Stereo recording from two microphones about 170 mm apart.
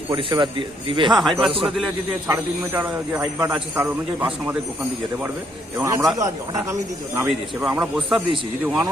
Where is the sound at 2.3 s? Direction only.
15° right (ahead or behind).